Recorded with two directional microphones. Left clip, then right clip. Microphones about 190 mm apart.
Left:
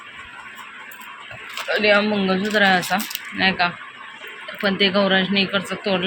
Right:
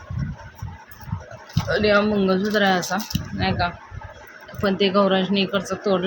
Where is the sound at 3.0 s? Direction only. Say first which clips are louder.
Left 2 dB; 30° right (ahead or behind).